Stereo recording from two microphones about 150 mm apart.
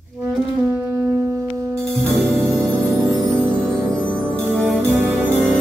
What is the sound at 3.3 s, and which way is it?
Music, 15° right (ahead or behind).